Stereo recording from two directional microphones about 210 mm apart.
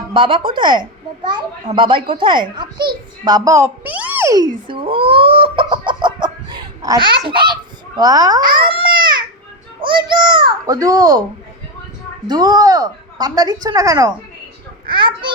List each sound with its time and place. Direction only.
0.1 s a child's voice: 25° right (ahead or behind)
12.3 s a child's voice: 20° right (ahead or behind)